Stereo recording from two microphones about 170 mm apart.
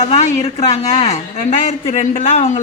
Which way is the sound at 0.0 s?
35° left (ahead or behind).